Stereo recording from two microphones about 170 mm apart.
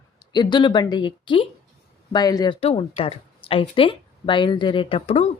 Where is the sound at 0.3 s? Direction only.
25° left (ahead or behind).